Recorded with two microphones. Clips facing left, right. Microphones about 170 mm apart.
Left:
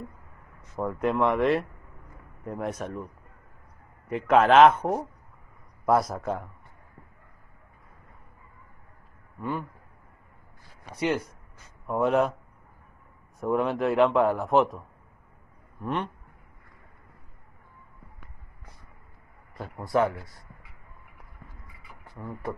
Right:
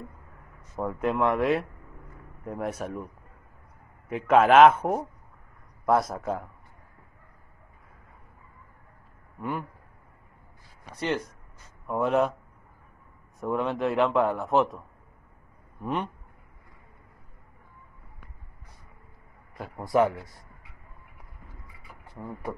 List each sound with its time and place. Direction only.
0.7 s a man's voice: centre (ahead or behind)
4.1 s a man's voice: 5° right (ahead or behind)
9.4 s speech: 10° right (ahead or behind)
11.8 s a man's voice: centre (ahead or behind)
13.4 s a man's voice: centre (ahead or behind)
15.8 s a man's voice: 5° right (ahead or behind)
19.8 s speech: 20° right (ahead or behind)
22.2 s speech: 10° right (ahead or behind)